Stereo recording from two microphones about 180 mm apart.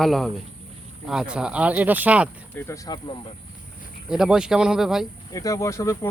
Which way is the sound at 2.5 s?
15° left (ahead or behind).